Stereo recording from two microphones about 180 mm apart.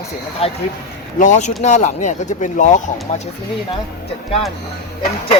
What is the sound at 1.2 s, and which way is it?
Speech, 40° left (ahead or behind).